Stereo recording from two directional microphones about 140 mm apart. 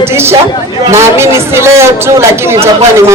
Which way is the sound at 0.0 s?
15° right (ahead or behind).